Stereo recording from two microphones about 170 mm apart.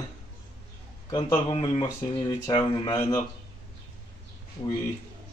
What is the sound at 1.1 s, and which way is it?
Speech, 25° left (ahead or behind).